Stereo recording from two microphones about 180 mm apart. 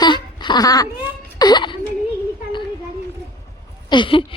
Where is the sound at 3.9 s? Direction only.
25° left (ahead or behind).